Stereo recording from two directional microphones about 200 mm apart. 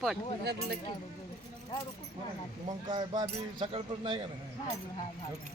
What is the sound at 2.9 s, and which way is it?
Speech, 25° right (ahead or behind).